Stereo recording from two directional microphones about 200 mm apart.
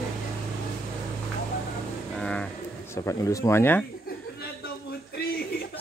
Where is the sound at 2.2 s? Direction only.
5° left (ahead or behind).